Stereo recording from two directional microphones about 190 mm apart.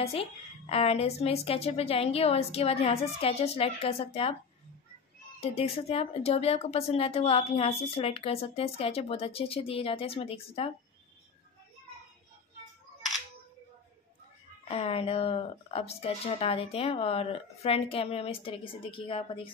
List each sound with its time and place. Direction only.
0.0 s speech: 30° left (ahead or behind)
5.4 s speech: 30° left (ahead or behind)
14.6 s speech: 30° left (ahead or behind)